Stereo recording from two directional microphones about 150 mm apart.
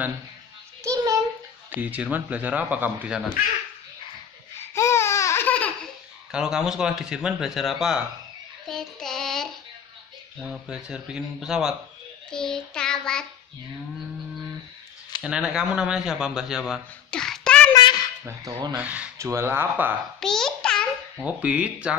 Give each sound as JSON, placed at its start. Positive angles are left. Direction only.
{"t": 0.8, "sound": "a sound", "side_deg": -20}
{"t": 1.7, "sound": "speech", "side_deg": -10}
{"t": 4.7, "sound": "a sound", "side_deg": 20}
{"t": 6.3, "sound": "a man's voice", "side_deg": -5}
{"t": 8.6, "sound": "child singing", "side_deg": 5}
{"t": 10.4, "sound": "a man's voice", "side_deg": -5}
{"t": 12.3, "sound": "child singing", "side_deg": 5}
{"t": 15.2, "sound": "a man's voice", "side_deg": -5}
{"t": 18.2, "sound": "a sound", "side_deg": -25}
{"t": 18.8, "sound": "speech", "side_deg": -10}
{"t": 20.2, "sound": "babbling", "side_deg": 5}
{"t": 21.2, "sound": "speech", "side_deg": -10}